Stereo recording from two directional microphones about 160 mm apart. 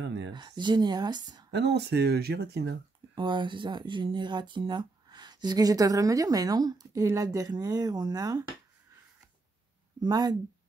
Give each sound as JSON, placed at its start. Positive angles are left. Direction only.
{"t": 0.3, "sound": "speech", "side_deg": -25}
{"t": 1.5, "sound": "speech", "side_deg": -90}
{"t": 3.2, "sound": "speech", "side_deg": -30}
{"t": 9.9, "sound": "speech", "side_deg": -25}